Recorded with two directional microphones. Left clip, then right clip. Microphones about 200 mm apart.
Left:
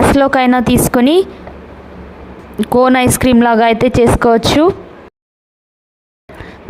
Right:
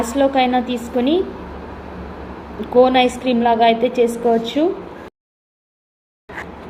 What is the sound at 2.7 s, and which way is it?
Speech, 60° left (ahead or behind).